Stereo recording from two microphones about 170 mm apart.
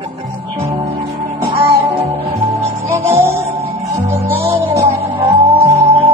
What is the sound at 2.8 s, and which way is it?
Music, 15° right (ahead or behind).